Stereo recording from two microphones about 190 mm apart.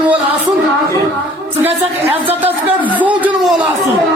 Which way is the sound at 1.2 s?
10° right (ahead or behind).